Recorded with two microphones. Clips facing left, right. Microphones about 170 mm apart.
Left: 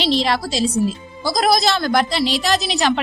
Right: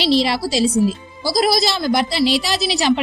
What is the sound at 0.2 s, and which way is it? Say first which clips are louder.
Speech: right 2 dB; 10° right (ahead or behind).